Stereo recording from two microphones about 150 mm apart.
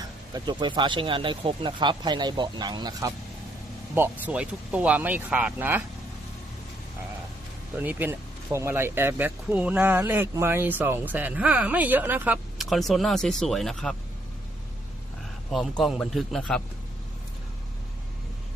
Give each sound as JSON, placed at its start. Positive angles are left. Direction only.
{"t": 0.0, "sound": "speech", "side_deg": -30}
{"t": 3.9, "sound": "speech", "side_deg": -10}
{"t": 7.8, "sound": "speech", "side_deg": -15}
{"t": 12.6, "sound": "speech", "side_deg": 0}
{"t": 15.5, "sound": "speech", "side_deg": 0}